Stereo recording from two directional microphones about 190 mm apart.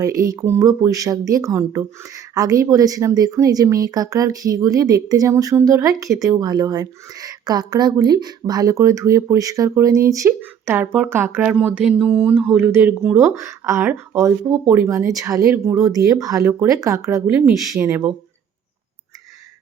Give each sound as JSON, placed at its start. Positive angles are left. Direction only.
{"t": 0.2, "sound": "speech", "side_deg": -20}